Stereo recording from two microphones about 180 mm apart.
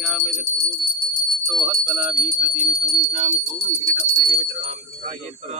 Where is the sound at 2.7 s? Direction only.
35° right (ahead or behind).